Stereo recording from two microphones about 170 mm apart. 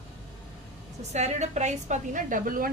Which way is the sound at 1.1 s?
40° right (ahead or behind).